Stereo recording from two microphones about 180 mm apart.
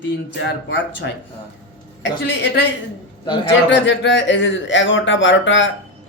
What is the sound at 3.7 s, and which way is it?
Speech, 85° left.